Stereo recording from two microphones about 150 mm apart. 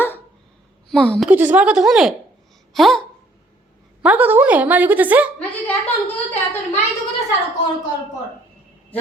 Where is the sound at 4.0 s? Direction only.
10° right (ahead or behind).